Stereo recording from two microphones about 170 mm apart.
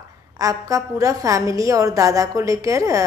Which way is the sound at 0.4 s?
20° right (ahead or behind).